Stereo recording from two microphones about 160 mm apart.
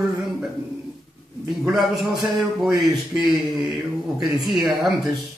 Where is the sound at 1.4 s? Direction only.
Centre (ahead or behind).